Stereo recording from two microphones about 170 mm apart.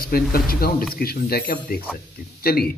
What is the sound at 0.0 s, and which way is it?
A man's voice, 60° left (ahead or behind).